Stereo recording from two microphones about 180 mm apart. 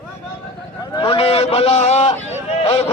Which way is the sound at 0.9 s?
30° left (ahead or behind).